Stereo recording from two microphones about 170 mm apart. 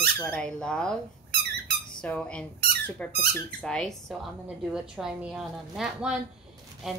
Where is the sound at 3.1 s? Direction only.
65° right (ahead or behind).